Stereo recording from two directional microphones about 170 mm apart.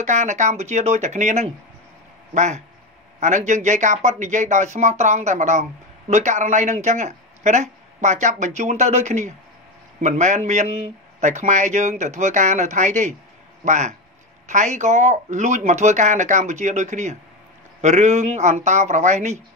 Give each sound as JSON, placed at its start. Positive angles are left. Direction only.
{"t": 0.0, "sound": "speech", "side_deg": -45}